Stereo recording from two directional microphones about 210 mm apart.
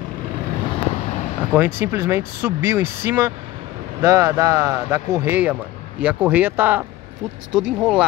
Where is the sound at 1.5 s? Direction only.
10° right (ahead or behind).